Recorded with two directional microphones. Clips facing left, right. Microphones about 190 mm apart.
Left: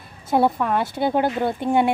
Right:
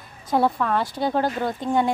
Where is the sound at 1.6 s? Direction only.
60° left (ahead or behind).